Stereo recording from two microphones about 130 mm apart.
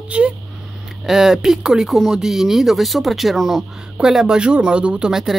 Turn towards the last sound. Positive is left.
turn(degrees=-5)  # may be behind; listen again after turning